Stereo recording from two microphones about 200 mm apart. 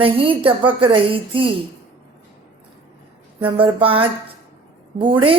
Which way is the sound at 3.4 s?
25° right (ahead or behind).